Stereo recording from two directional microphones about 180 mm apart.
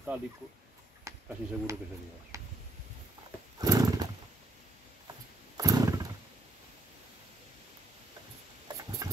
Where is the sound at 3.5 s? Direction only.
20° right (ahead or behind).